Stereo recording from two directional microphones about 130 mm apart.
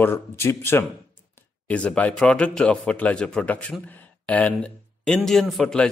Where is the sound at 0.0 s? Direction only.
20° left (ahead or behind).